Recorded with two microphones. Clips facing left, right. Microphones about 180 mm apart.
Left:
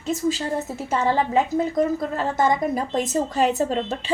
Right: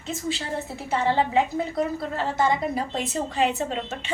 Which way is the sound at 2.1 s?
45° left (ahead or behind).